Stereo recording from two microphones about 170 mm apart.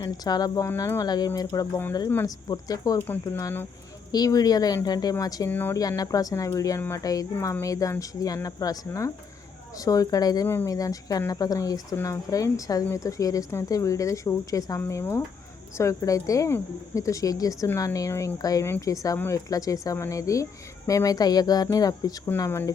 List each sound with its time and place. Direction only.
0.0 s a woman's voice: 25° left (ahead or behind)